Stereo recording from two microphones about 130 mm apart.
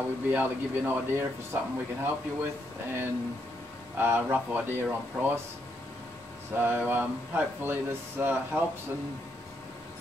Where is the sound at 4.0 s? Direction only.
15° right (ahead or behind).